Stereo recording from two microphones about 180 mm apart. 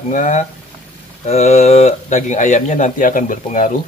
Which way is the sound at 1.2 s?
40° left (ahead or behind).